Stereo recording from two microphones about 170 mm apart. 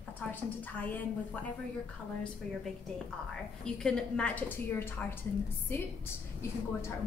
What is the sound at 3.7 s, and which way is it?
A woman's voice, 5° left (ahead or behind).